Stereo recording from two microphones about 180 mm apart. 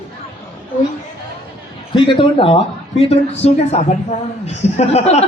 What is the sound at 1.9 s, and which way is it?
A man's voice, 30° left (ahead or behind).